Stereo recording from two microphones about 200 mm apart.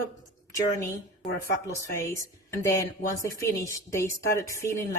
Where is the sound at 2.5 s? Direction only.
15° left (ahead or behind).